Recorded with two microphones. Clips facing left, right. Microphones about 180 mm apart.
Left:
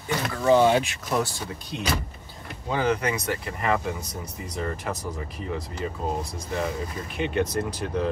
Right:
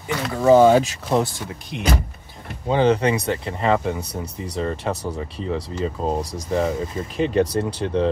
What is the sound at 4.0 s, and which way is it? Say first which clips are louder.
Speech: right 6 dB; 65° right (ahead or behind).